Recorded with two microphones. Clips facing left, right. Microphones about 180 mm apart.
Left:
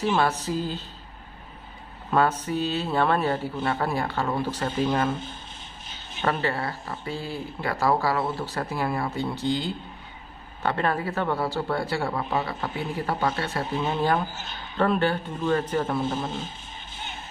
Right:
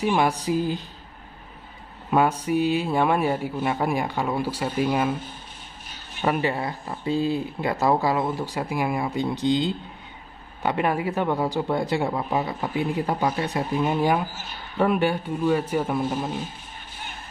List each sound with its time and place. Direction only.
0.0 s speech: 15° right (ahead or behind)
2.0 s speech: 15° right (ahead or behind)